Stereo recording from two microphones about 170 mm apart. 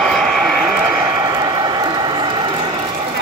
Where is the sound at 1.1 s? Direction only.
20° right (ahead or behind).